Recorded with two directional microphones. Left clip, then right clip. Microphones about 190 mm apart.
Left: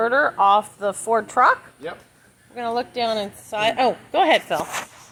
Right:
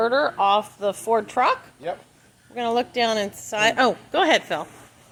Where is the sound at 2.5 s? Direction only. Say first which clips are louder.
Right 2 dB; 20° right (ahead or behind).